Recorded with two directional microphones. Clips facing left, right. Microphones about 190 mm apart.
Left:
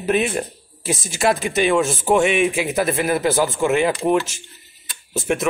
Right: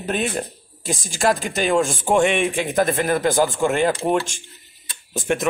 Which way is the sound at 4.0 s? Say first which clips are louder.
Left 2 dB; 30° right (ahead or behind).